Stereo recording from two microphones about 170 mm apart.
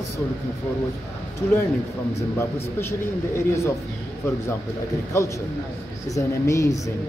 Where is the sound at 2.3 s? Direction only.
15° left (ahead or behind).